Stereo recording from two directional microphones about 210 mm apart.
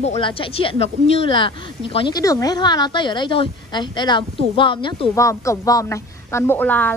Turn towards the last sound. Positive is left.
turn(degrees=10)  # may be behind; listen again after turning